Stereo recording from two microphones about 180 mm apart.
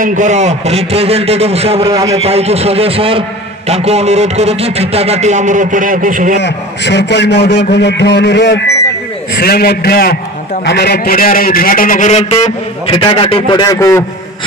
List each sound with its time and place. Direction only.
0.0 s a man's voice: 45° right (ahead or behind)
6.4 s a man's voice: 75° left (ahead or behind)
9.3 s a man's voice: 60° left (ahead or behind); by 14.0 s 15° left (ahead or behind)